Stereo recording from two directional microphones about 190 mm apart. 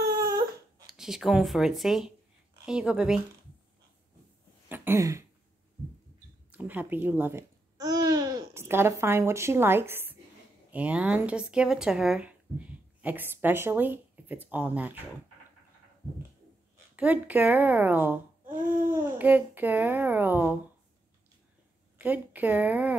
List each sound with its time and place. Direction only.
0.2 s baby cry: 20° right (ahead or behind)
0.8 s speech: centre (ahead or behind)
4.6 s throat clearing: 10° right (ahead or behind)
6.5 s speech: 10° right (ahead or behind)
16.9 s a child's voice: 10° right (ahead or behind)
18.4 s a sound: 45° right (ahead or behind)
18.9 s a child's voice: 10° right (ahead or behind)
21.9 s a woman's voice: 10° right (ahead or behind)